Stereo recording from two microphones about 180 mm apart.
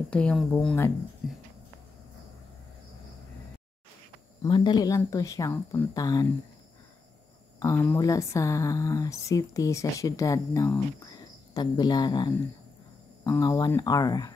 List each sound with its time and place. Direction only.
0.1 s speech: 5° left (ahead or behind)
1.2 s a sound: centre (ahead or behind)
4.4 s speech: 25° left (ahead or behind)
7.6 s speech: 15° left (ahead or behind)